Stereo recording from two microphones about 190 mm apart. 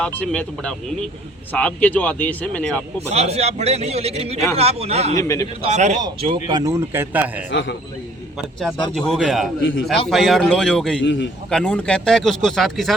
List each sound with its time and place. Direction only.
0.0 s speech: 5° left (ahead or behind)
3.1 s a man's voice: 35° right (ahead or behind)
5.1 s speech: 20° left (ahead or behind)
5.6 s a man's voice: 35° right (ahead or behind)
6.0 s speech: 25° right (ahead or behind); by 7.4 s 10° right (ahead or behind)
7.5 s a man's voice: 70° left (ahead or behind)
8.9 s speech: centre (ahead or behind)
11.0 s a man's voice: 75° left (ahead or behind)
11.5 s speech: 5° left (ahead or behind)